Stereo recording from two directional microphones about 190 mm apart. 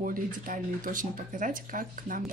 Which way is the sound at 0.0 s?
45° right (ahead or behind).